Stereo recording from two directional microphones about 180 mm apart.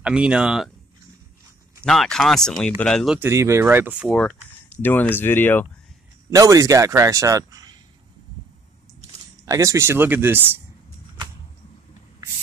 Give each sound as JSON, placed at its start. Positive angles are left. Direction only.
{"t": 0.0, "sound": "speech", "side_deg": -5}
{"t": 1.9, "sound": "speech", "side_deg": 0}
{"t": 3.2, "sound": "speech", "side_deg": -15}
{"t": 6.3, "sound": "speech", "side_deg": -20}
{"t": 9.5, "sound": "speech", "side_deg": -15}